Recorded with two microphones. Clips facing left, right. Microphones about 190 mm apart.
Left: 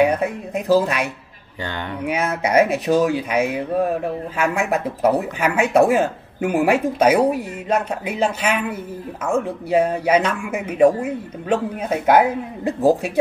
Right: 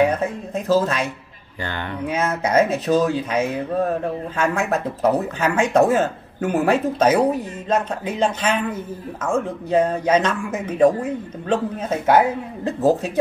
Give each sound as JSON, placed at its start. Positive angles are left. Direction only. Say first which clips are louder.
{"t": 0.0, "sound": "speech", "louder": "left 1 dB", "side_deg": 10}